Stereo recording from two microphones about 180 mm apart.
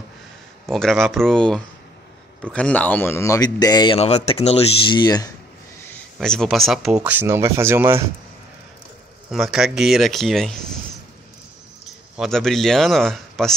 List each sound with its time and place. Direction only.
0.7 s speech: 5° left (ahead or behind); by 5.3 s 20° left (ahead or behind)
6.1 s speech: 5° left (ahead or behind); by 8.0 s 15° right (ahead or behind)
9.3 s speech: centre (ahead or behind)
12.2 s speech: centre (ahead or behind)